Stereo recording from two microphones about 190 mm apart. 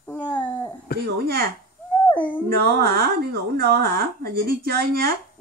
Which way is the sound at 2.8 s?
55° right (ahead or behind).